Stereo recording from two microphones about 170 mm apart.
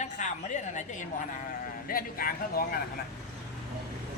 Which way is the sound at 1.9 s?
55° left (ahead or behind).